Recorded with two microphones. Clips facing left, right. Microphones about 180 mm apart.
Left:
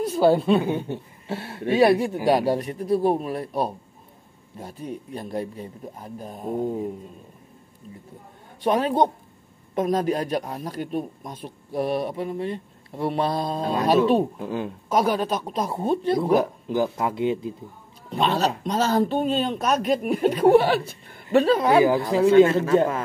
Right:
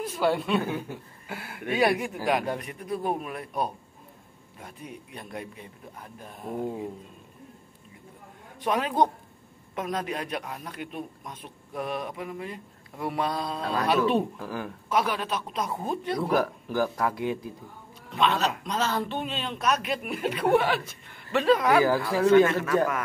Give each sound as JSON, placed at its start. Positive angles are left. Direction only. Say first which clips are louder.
{"t": 0.0, "sound": "a woman's voice", "louder": "left 7 dB", "side_deg": 35}
{"t": 8.5, "sound": "speech", "louder": "left 4 dB", "side_deg": 30}
{"t": 14.4, "sound": "speech", "louder": "left 6 dB", "side_deg": 20}
{"t": 14.9, "sound": "speech", "louder": "left 5 dB", "side_deg": 40}
{"t": 18.1, "sound": "speech", "louder": "left 3 dB", "side_deg": 35}